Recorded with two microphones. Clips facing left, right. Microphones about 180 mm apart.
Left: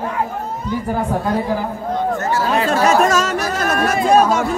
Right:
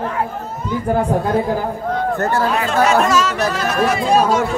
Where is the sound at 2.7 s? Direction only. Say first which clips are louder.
Left 1 dB; 45° left (ahead or behind).